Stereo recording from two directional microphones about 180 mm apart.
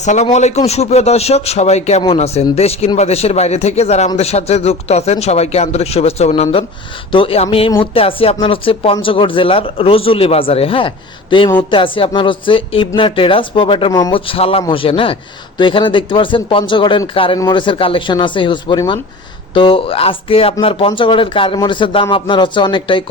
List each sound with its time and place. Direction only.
0.0 s a man's voice: 40° left (ahead or behind)